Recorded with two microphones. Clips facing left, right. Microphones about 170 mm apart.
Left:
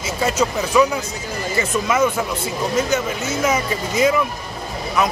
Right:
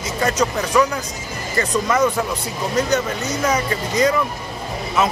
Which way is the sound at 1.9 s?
5° left (ahead or behind).